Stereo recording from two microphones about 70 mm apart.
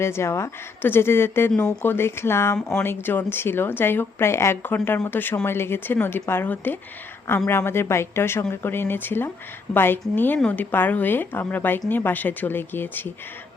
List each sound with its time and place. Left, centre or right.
0.0 s speech: left
1.5 s speech: centre
1.8 s a woman's voice: left